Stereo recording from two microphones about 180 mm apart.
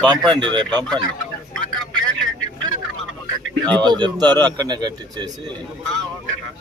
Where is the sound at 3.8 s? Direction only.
25° right (ahead or behind).